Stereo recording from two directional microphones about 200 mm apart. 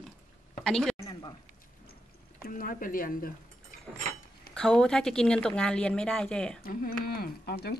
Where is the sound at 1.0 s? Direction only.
20° left (ahead or behind).